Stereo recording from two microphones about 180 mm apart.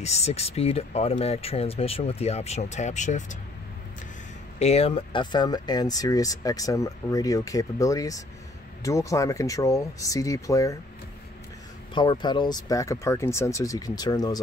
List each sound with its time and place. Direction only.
0.0 s speech: 35° left (ahead or behind)
4.6 s speech: 35° left (ahead or behind); by 10.8 s 20° left (ahead or behind)
11.9 s speech: 25° left (ahead or behind)